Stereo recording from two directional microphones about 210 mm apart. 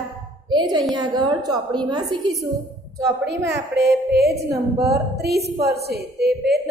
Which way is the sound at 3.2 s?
50° right (ahead or behind).